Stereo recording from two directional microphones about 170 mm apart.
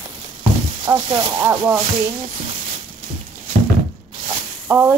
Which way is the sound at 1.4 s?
10° right (ahead or behind).